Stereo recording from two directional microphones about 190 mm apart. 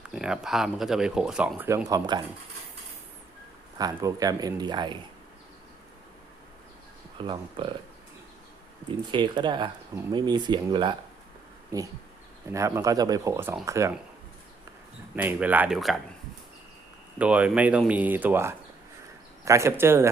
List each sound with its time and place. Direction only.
0.1 s a man's voice: 5° right (ahead or behind); by 2.2 s 20° right (ahead or behind)
3.8 s a man's voice: 20° right (ahead or behind)
7.2 s a man's voice: 25° right (ahead or behind)
9.1 s a man's voice: 25° right (ahead or behind)
15.1 s speech: 10° right (ahead or behind)
17.2 s speech: 5° right (ahead or behind)